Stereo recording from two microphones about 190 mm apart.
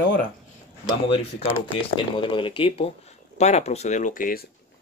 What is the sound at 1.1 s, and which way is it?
Speech, 30° left (ahead or behind).